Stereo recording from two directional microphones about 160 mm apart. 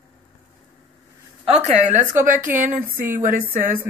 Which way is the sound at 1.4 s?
45° right (ahead or behind).